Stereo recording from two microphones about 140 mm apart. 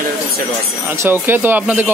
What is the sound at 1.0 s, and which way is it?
Speech, 15° right (ahead or behind).